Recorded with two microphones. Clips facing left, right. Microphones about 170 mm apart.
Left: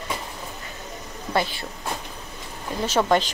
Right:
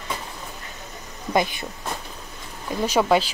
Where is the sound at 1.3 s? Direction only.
15° right (ahead or behind).